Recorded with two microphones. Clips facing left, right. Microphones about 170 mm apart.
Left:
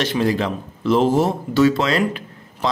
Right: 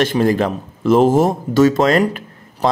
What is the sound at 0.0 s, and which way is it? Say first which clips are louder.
Speech: right 4 dB; 50° right (ahead or behind).